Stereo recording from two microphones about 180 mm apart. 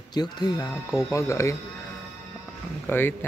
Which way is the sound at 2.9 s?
10° left (ahead or behind).